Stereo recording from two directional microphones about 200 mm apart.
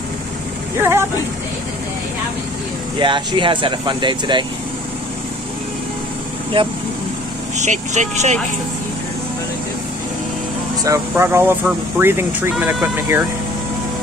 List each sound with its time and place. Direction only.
0.7 s speech: 10° right (ahead or behind)
3.0 s speech: 25° right (ahead or behind)
6.5 s speech: 25° right (ahead or behind)
10.8 s speech: 15° right (ahead or behind)